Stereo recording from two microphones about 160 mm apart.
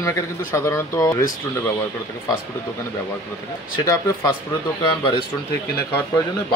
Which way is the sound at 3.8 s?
20° left (ahead or behind).